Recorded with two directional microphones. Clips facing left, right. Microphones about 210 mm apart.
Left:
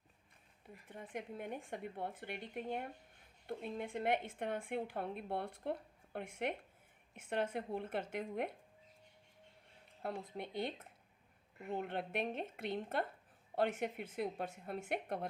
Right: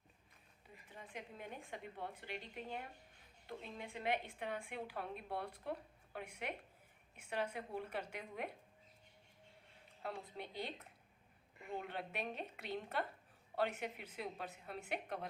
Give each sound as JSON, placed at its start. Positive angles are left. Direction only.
{"t": 0.9, "sound": "a woman's voice", "side_deg": 55}
{"t": 7.3, "sound": "a woman's voice", "side_deg": 50}
{"t": 10.0, "sound": "a woman's voice", "side_deg": 55}